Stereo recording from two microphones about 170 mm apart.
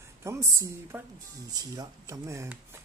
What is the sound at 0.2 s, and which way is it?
Speech, 15° right (ahead or behind).